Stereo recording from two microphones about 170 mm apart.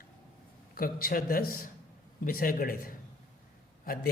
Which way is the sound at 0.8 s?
60° left (ahead or behind).